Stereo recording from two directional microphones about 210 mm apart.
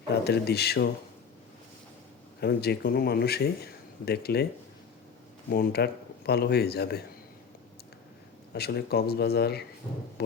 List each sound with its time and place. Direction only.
0.1 s speech: 50° left (ahead or behind)
2.4 s speech: 50° left (ahead or behind)
5.5 s speech: 45° left (ahead or behind)
8.5 s speech: 50° left (ahead or behind)